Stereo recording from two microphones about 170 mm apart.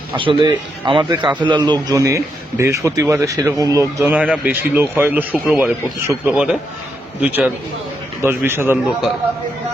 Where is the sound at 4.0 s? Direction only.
10° right (ahead or behind).